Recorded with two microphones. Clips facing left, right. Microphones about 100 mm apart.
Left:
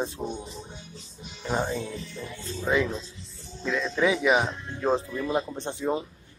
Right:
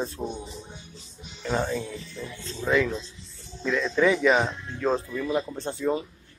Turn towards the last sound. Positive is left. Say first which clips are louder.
# right 1 dB
turn(degrees=20)  # may be behind; listen again after turning